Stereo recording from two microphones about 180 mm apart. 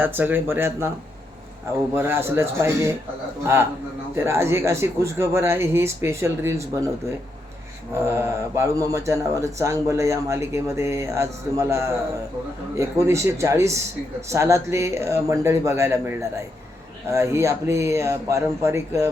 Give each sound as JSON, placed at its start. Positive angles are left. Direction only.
{"t": 0.0, "sound": "speech", "side_deg": -10}
{"t": 2.0, "sound": "speech", "side_deg": -15}